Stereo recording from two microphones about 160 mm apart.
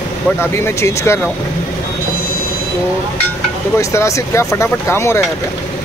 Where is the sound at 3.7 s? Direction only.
20° left (ahead or behind).